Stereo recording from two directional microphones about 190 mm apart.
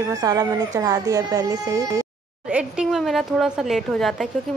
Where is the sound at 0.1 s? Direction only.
20° right (ahead or behind).